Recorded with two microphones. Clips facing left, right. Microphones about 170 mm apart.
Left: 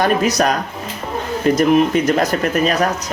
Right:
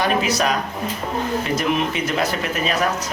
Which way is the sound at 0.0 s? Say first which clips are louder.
Left 4 dB; 45° left (ahead or behind).